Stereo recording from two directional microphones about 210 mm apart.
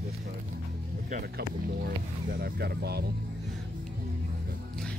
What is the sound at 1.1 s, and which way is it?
Speech, 45° right (ahead or behind).